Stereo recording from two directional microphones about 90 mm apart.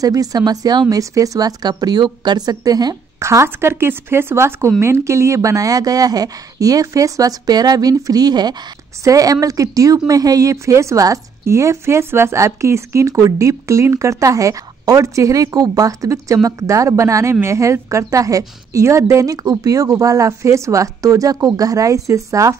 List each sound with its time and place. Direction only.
0.0 s speech: 40° right (ahead or behind)
3.2 s a woman's voice: 30° right (ahead or behind)